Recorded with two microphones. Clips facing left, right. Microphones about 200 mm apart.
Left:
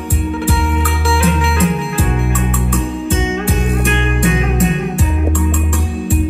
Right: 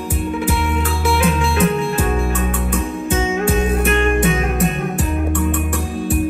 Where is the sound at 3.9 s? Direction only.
Centre (ahead or behind).